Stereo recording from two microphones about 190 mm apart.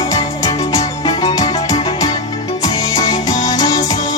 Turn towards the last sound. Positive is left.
turn(degrees=20)  # may be behind; listen again after turning